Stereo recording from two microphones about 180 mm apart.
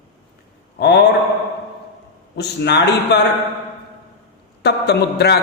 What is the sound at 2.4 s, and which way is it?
Speech, 70° left (ahead or behind).